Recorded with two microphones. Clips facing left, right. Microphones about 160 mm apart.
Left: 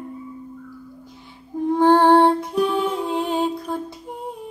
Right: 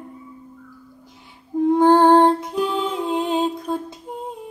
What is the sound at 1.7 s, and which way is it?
Music, 15° right (ahead or behind).